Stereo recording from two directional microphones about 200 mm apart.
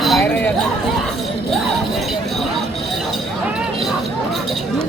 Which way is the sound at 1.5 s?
Centre (ahead or behind).